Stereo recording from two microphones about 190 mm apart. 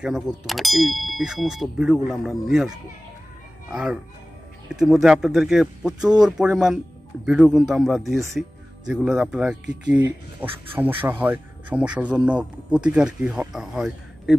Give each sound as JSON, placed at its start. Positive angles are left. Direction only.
{"t": 0.5, "sound": "clang", "side_deg": 0}
{"t": 8.4, "sound": "speech", "side_deg": -5}